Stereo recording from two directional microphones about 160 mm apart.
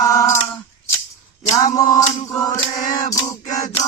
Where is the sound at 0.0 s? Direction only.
20° left (ahead or behind).